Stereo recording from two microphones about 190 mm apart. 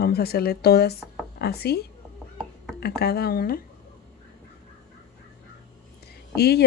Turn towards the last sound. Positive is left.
turn(degrees=60)  # may be behind; listen again after turning